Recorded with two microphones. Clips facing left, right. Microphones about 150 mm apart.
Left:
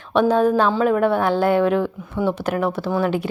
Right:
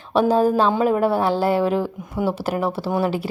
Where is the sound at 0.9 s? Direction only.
35° right (ahead or behind).